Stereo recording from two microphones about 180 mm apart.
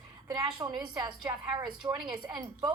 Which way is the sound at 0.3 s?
20° right (ahead or behind).